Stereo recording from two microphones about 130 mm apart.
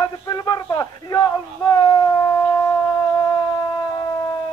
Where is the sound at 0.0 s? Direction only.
30° left (ahead or behind).